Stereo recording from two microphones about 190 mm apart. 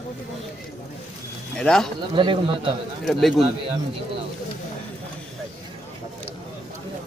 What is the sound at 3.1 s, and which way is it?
Speech, centre (ahead or behind).